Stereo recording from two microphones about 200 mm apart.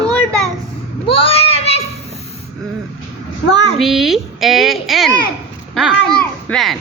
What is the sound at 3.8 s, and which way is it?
Speech, centre (ahead or behind).